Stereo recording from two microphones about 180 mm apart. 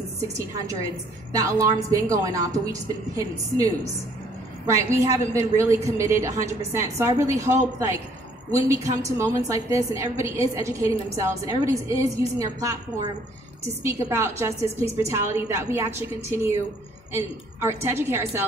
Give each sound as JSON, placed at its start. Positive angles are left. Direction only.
{"t": 1.4, "sound": "a woman's voice", "side_deg": -15}
{"t": 13.8, "sound": "a woman's voice", "side_deg": -15}